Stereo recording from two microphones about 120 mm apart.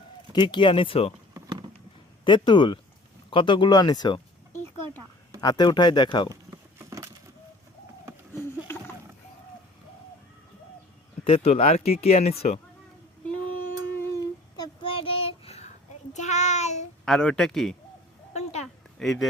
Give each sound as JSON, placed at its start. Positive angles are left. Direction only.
{"t": 0.3, "sound": "speech", "side_deg": 40}
{"t": 2.2, "sound": "speech", "side_deg": 40}
{"t": 5.4, "sound": "speech", "side_deg": 35}
{"t": 6.5, "sound": "patter", "side_deg": -25}
{"t": 8.4, "sound": "rowboat", "side_deg": 20}
{"t": 11.3, "sound": "speech", "side_deg": 55}
{"t": 13.9, "sound": "humming", "side_deg": 20}
{"t": 14.5, "sound": "child singing", "side_deg": 35}
{"t": 14.9, "sound": "child singing", "side_deg": 50}
{"t": 16.1, "sound": "child singing", "side_deg": 80}
{"t": 17.1, "sound": "speech", "side_deg": 5}
{"t": 18.3, "sound": "a sound", "side_deg": 65}
{"t": 18.9, "sound": "speech", "side_deg": 5}